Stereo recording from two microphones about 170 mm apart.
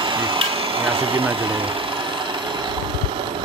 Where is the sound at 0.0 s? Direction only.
30° right (ahead or behind).